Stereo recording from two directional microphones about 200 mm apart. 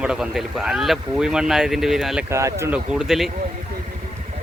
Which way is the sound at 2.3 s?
15° right (ahead or behind).